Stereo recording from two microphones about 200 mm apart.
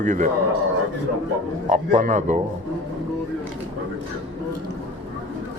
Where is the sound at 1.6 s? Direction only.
40° right (ahead or behind).